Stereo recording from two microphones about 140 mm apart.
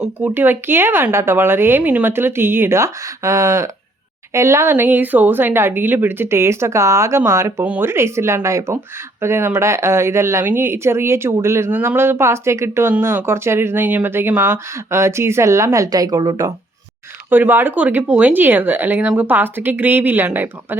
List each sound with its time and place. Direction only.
0.0 s speech: 10° right (ahead or behind); by 16.5 s 25° right (ahead or behind)
17.2 s speech: 15° right (ahead or behind)